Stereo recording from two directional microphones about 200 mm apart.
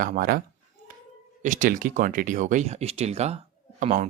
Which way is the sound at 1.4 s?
40° right (ahead or behind).